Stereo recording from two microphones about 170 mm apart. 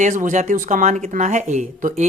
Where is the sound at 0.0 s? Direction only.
45° right (ahead or behind).